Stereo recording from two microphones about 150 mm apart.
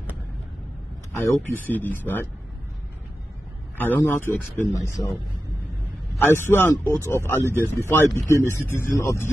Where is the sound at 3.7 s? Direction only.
15° left (ahead or behind).